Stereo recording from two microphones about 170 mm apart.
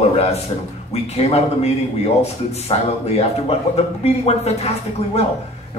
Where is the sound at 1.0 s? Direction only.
40° left (ahead or behind).